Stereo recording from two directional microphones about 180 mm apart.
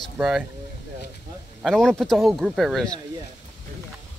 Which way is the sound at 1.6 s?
5° left (ahead or behind).